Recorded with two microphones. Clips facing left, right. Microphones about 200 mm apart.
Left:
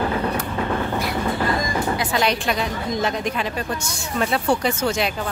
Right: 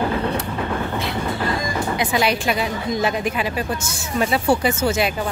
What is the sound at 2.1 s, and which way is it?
Speech, 5° right (ahead or behind).